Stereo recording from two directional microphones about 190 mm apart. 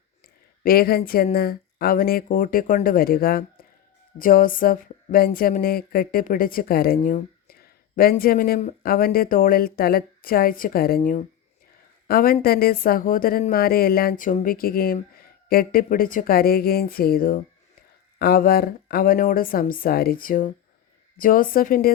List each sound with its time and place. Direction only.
0.6 s speech: 50° left (ahead or behind)